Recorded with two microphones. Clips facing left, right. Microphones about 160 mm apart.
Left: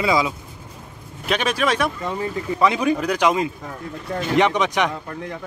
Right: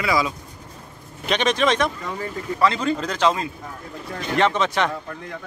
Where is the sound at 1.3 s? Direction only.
5° left (ahead or behind).